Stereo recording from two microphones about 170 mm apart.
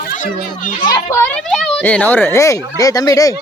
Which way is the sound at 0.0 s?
55° left (ahead or behind).